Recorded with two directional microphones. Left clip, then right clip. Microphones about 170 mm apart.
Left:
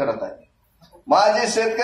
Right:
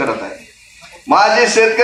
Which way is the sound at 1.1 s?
60° left (ahead or behind).